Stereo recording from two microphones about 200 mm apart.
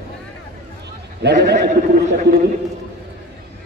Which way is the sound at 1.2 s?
55° right (ahead or behind).